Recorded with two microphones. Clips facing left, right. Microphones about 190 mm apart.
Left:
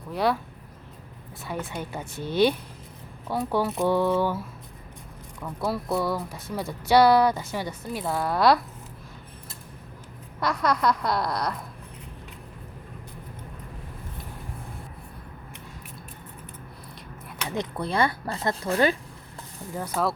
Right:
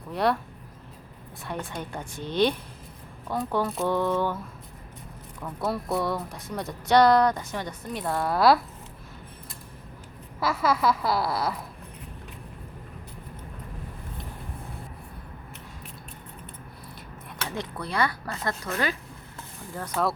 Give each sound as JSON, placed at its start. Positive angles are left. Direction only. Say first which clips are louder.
{"t": 0.1, "sound": "a woman's voice", "louder": "even", "side_deg": 0}
{"t": 1.5, "sound": "a woman's voice", "louder": "left 1 dB", "side_deg": 5}
{"t": 10.4, "sound": "a woman's voice", "louder": "even", "side_deg": -5}
{"t": 17.5, "sound": "speech", "louder": "left 5 dB", "side_deg": 20}
{"t": 19.7, "sound": "a woman's voice", "louder": "left 1 dB", "side_deg": 10}